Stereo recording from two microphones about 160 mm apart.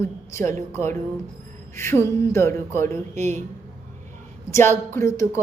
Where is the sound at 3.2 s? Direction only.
45° right (ahead or behind).